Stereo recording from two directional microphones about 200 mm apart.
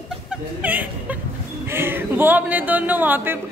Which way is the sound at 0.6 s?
10° right (ahead or behind).